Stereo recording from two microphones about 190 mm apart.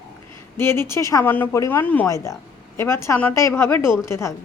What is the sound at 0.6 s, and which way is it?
A woman's voice, 15° left (ahead or behind).